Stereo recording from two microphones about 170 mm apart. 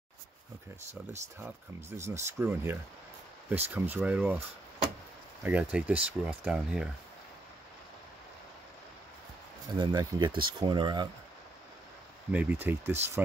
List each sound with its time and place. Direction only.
1.4 s speech: 15° right (ahead or behind)
9.8 s speech: 25° right (ahead or behind)
12.3 s speech: 10° right (ahead or behind)